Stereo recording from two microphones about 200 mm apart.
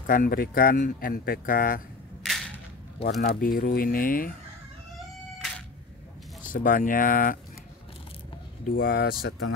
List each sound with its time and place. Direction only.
0.0 s speech: 45° left (ahead or behind)
3.1 s speech: 45° left (ahead or behind)
4.9 s cat: centre (ahead or behind)
6.4 s speech: 45° left (ahead or behind)
8.7 s speech: 50° left (ahead or behind)